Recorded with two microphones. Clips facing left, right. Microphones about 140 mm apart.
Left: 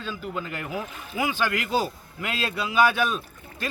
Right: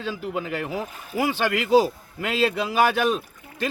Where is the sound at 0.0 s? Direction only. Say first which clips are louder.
Right 4 dB; 75° right (ahead or behind).